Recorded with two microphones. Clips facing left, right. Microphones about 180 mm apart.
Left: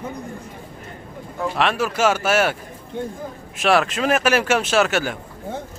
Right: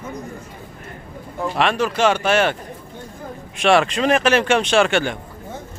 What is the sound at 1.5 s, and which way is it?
Speech, 5° left (ahead or behind).